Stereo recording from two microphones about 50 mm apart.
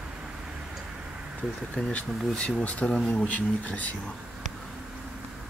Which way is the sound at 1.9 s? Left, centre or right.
Left.